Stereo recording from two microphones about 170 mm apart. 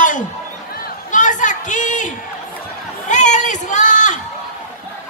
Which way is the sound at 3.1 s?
45° left (ahead or behind).